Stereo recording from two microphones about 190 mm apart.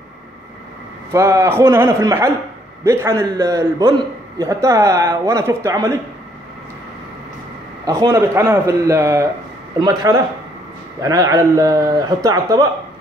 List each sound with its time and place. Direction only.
1.1 s a man's voice: 15° right (ahead or behind)
7.8 s a man's voice: 15° right (ahead or behind)